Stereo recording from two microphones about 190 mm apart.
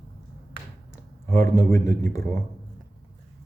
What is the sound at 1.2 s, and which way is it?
Speech, 15° left (ahead or behind).